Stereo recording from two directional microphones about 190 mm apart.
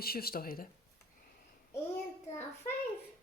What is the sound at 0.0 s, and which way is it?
Speech, 55° left (ahead or behind).